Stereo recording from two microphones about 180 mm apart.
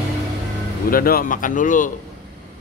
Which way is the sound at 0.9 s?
55° left (ahead or behind).